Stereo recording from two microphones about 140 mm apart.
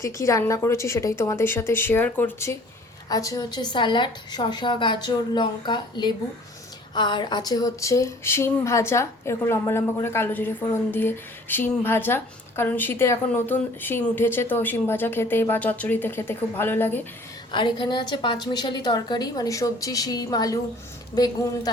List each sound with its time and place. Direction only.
0.0 s a woman's voice: 20° left (ahead or behind)
17.5 s a woman's voice: 35° left (ahead or behind)